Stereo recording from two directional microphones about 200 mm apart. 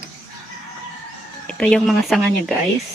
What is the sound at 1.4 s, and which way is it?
A woman's voice, 5° left (ahead or behind).